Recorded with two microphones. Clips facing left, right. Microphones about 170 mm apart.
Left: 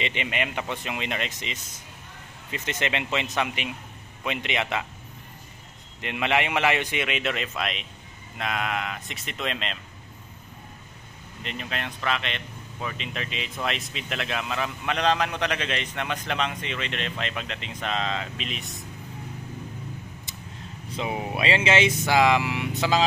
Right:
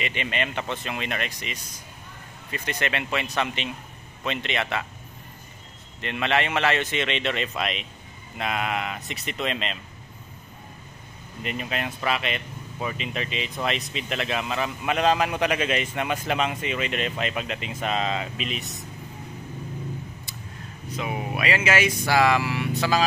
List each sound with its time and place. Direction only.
0.0 s speech: 20° left (ahead or behind)
5.9 s speech: 15° left (ahead or behind); by 9.8 s centre (ahead or behind)
11.4 s speech: 5° right (ahead or behind)
20.9 s speech: 25° left (ahead or behind)